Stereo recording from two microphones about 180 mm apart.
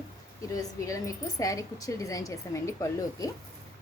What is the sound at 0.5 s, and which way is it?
A woman's voice, 20° left (ahead or behind).